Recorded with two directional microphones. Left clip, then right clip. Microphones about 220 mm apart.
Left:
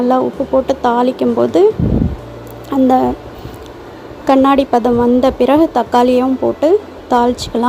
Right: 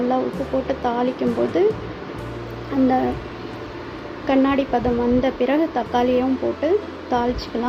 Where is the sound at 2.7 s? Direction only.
40° left (ahead or behind).